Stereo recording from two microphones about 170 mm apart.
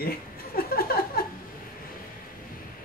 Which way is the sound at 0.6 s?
60° left (ahead or behind).